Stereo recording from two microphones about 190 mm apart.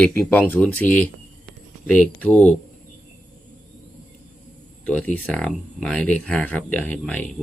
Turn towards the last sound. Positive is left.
turn(degrees=10)  # may be behind; listen again after turning